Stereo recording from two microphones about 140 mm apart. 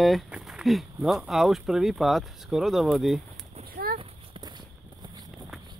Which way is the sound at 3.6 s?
90° right.